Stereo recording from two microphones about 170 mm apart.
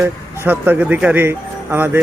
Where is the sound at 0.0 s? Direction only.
10° right (ahead or behind).